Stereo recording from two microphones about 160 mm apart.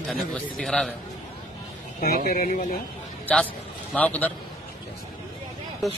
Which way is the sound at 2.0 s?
65° left (ahead or behind).